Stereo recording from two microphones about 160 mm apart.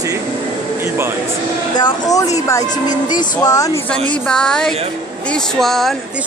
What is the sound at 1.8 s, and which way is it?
Speech, 20° left (ahead or behind).